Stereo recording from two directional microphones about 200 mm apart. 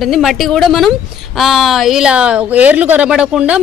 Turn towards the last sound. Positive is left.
turn(degrees=-5)  # may be behind; listen again after turning